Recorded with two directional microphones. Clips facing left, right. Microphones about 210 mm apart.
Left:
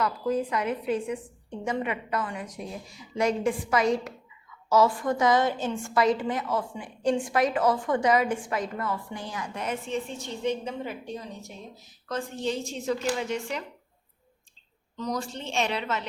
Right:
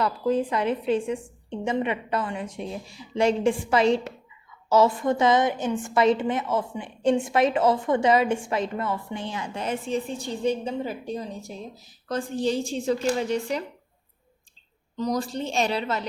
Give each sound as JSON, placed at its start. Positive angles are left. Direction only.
{"t": 0.0, "sound": "a woman's voice", "side_deg": -30}
{"t": 14.9, "sound": "a woman's voice", "side_deg": -35}